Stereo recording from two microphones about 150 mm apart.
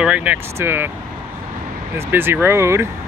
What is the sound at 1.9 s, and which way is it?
Speech, 15° right (ahead or behind).